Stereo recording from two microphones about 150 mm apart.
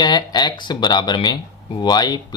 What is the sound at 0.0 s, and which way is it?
Speech, 30° left (ahead or behind).